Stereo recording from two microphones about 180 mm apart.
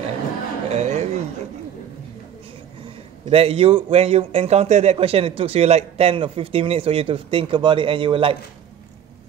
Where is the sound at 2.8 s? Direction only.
30° right (ahead or behind).